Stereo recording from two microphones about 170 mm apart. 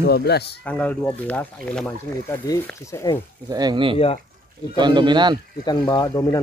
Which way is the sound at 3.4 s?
25° right (ahead or behind).